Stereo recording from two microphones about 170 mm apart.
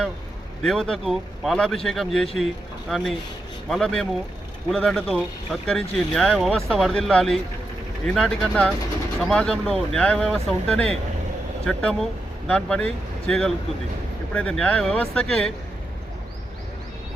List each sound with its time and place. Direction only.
0.6 s a man's voice: centre (ahead or behind)